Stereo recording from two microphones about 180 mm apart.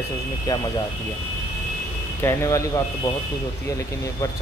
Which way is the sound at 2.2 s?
15° left (ahead or behind).